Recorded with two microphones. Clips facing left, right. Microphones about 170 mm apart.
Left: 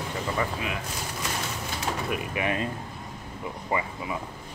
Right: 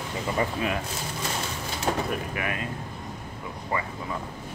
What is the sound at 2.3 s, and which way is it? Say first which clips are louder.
Speech: left 3 dB; 20° left (ahead or behind).